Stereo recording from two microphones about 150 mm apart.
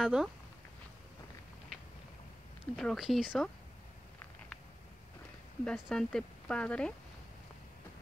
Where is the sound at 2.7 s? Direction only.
Centre (ahead or behind).